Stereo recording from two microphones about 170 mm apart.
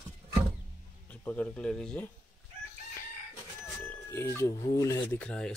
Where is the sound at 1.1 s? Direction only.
10° left (ahead or behind).